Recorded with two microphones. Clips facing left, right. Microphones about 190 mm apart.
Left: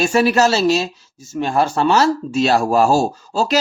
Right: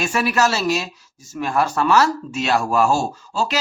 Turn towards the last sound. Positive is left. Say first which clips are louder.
# left 5 dB
turn(degrees=40)  # may be behind; listen again after turning